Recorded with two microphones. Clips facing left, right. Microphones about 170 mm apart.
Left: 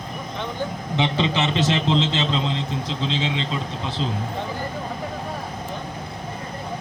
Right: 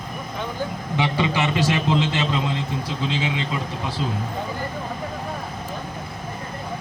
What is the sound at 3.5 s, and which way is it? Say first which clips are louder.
Speech: even; 20° left (ahead or behind).